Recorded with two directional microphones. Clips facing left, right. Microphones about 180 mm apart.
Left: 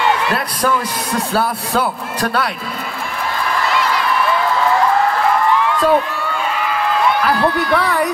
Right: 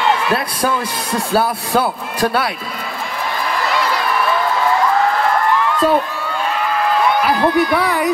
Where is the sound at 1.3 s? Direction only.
10° right (ahead or behind).